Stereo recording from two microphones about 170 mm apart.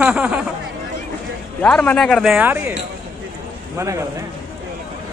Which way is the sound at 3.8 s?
15° right (ahead or behind).